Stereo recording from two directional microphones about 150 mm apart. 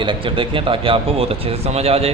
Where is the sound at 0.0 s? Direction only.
35° right (ahead or behind).